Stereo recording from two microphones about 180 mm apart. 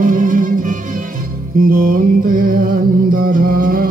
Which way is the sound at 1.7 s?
50° right (ahead or behind).